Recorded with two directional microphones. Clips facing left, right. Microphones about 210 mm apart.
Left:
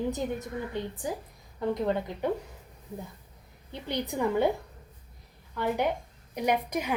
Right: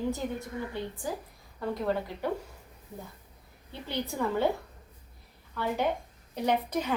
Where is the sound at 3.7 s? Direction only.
15° left (ahead or behind).